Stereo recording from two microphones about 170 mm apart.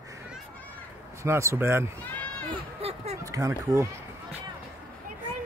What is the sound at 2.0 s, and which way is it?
Run, 10° left (ahead or behind).